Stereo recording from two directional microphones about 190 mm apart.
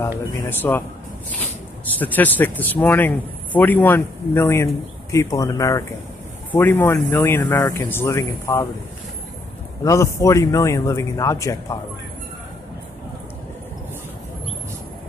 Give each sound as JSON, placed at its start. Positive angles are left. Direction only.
{"t": 0.5, "sound": "a man's voice", "side_deg": 10}
{"t": 2.0, "sound": "a man's voice", "side_deg": 10}
{"t": 9.8, "sound": "a man's voice", "side_deg": 15}